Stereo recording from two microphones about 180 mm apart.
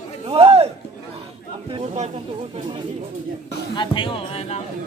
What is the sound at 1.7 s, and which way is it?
Snake, 35° right (ahead or behind).